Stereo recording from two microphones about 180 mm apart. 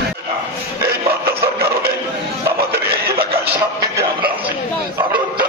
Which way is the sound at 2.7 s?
60° right (ahead or behind).